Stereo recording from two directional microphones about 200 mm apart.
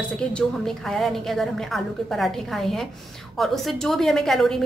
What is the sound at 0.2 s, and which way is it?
A woman's voice, 5° left (ahead or behind).